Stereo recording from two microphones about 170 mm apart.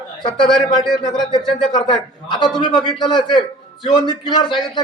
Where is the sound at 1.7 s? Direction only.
25° left (ahead or behind).